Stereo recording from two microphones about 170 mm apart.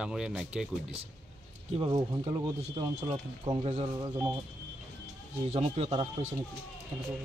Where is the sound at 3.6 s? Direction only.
40° right (ahead or behind).